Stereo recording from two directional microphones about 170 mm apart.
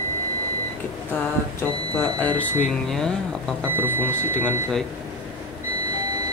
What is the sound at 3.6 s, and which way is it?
Speech, 10° right (ahead or behind).